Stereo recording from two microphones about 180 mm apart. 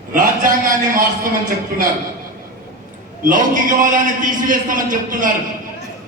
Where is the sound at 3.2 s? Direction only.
50° right (ahead or behind).